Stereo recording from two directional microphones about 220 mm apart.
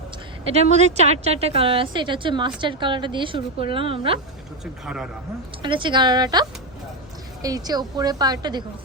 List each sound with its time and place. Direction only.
0.5 s a woman's voice: 30° right (ahead or behind)
4.6 s speech: centre (ahead or behind)
5.6 s a woman's voice: 20° right (ahead or behind)
7.4 s a woman's voice: 15° right (ahead or behind)